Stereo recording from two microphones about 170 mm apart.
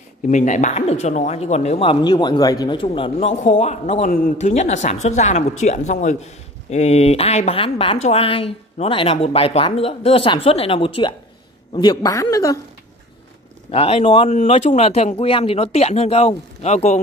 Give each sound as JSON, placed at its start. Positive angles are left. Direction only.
{"t": 0.3, "sound": "a woman's voice", "side_deg": 45}
{"t": 13.7, "sound": "speech", "side_deg": 35}